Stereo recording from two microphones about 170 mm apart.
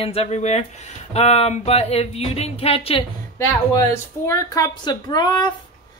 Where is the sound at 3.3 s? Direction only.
15° left (ahead or behind).